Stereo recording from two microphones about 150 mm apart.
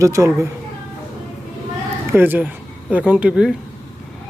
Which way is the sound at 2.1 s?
15° right (ahead or behind).